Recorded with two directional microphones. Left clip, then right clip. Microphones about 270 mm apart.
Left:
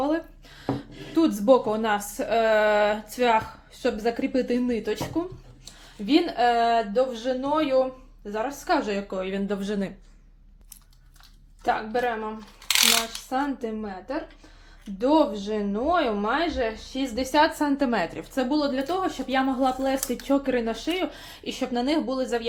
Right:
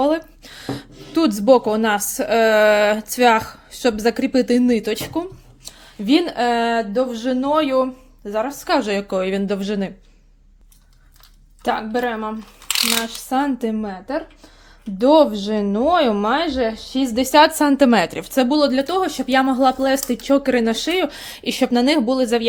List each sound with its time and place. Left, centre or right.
0.0 s speech: right
9.6 s speech: right
11.6 s a woman's voice: right